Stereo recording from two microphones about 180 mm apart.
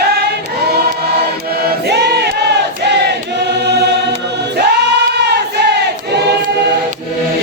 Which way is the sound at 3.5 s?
65° right (ahead or behind).